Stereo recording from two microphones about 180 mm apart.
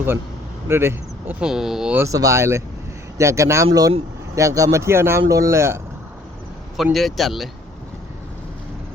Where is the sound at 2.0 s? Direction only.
20° right (ahead or behind).